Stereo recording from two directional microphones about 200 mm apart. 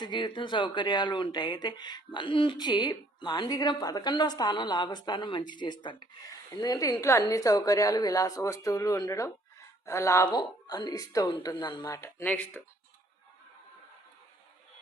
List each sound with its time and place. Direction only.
0.0 s a woman's voice: 25° left (ahead or behind); by 12.6 s 5° left (ahead or behind)